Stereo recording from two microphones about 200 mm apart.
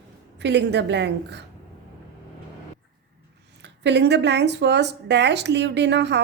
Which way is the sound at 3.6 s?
60° right (ahead or behind).